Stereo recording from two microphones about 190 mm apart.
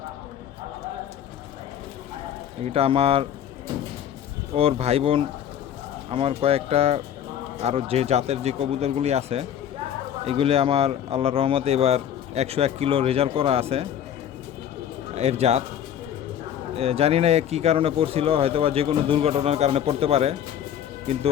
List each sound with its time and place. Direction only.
2.6 s speech: 30° right (ahead or behind)
4.5 s speech: 30° right (ahead or behind)
15.1 s speech: 35° right (ahead or behind)
16.7 s speech: 30° right (ahead or behind)